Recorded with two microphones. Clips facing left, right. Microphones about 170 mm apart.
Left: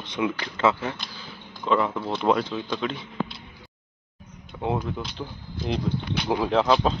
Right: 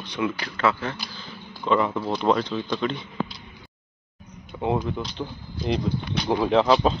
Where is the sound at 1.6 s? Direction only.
Centre (ahead or behind).